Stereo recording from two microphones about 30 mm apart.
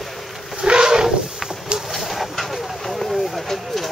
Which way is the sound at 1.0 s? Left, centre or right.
Centre.